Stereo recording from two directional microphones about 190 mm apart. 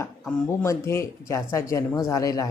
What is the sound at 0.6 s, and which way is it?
Speech, 15° left (ahead or behind).